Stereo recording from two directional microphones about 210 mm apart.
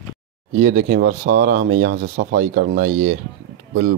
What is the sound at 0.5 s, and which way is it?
Speech, 40° right (ahead or behind).